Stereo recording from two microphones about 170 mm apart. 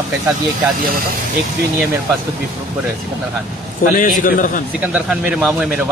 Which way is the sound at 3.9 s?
55° left (ahead or behind).